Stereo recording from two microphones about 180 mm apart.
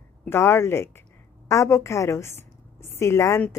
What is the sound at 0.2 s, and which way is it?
A woman's voice, 15° left (ahead or behind).